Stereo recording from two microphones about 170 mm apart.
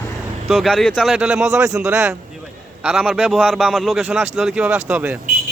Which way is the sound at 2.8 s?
5° right (ahead or behind).